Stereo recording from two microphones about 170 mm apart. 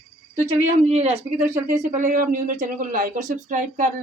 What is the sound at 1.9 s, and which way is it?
Speech, 50° right (ahead or behind).